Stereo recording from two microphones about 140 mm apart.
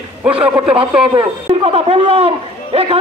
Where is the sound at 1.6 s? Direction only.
45° right (ahead or behind).